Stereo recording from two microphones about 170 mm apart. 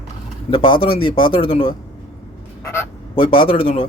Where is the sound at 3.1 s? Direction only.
30° left (ahead or behind).